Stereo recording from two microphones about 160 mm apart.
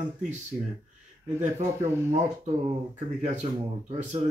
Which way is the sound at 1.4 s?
45° right (ahead or behind).